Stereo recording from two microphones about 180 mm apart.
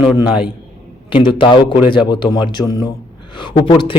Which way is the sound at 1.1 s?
25° left (ahead or behind).